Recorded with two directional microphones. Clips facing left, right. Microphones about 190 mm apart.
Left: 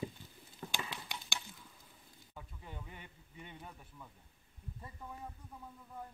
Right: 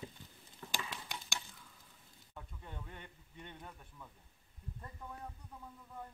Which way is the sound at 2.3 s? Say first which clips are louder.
Even; 5° left (ahead or behind).